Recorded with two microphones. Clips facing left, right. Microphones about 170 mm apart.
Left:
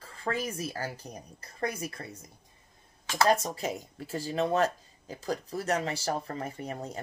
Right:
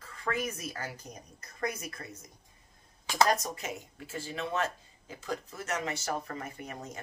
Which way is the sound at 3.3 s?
30° left (ahead or behind).